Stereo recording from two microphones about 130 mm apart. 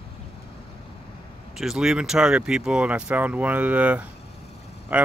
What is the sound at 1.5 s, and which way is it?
Speech, centre (ahead or behind).